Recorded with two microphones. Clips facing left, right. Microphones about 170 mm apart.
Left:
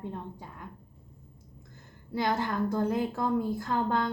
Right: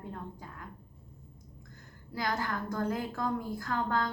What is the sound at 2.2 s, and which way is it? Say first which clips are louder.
A woman's voice: left 5 dB; 25° left (ahead or behind).